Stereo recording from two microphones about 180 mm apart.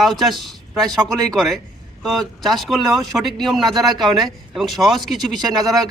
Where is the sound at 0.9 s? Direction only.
20° right (ahead or behind).